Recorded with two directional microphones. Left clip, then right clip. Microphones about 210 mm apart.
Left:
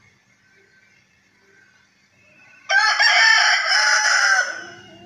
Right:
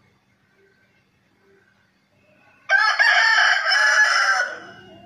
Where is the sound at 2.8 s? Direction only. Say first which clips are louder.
Left 2 dB; centre (ahead or behind).